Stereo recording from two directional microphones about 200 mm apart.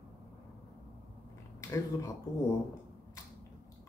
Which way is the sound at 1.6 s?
15° left (ahead or behind).